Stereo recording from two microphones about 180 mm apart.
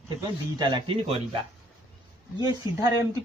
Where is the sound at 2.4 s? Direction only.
20° right (ahead or behind).